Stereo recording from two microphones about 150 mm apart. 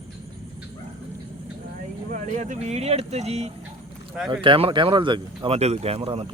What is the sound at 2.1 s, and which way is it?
Speech, 55° right (ahead or behind).